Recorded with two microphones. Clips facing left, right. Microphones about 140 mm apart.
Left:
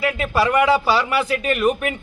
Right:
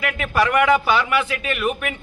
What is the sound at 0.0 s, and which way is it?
A man's voice, 30° left (ahead or behind).